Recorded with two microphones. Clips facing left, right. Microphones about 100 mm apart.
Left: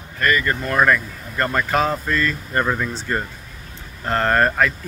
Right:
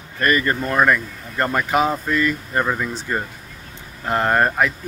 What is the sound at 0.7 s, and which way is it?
Speech, 10° right (ahead or behind).